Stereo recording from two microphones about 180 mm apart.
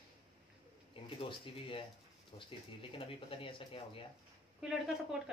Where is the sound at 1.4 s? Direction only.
30° left (ahead or behind).